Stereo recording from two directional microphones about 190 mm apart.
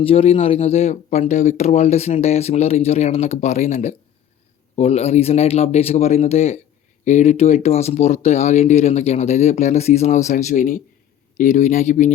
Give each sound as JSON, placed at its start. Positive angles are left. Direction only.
{"t": 0.0, "sound": "speech", "side_deg": 30}